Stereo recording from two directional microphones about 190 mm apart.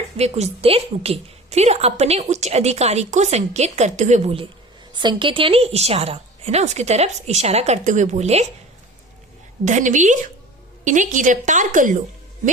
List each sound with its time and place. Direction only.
0.2 s a woman's voice: 35° right (ahead or behind)
9.6 s a woman's voice: 40° right (ahead or behind)